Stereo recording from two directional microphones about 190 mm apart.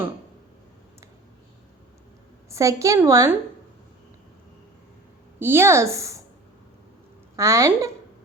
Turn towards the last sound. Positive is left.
turn(degrees=-15)  # may be behind; listen again after turning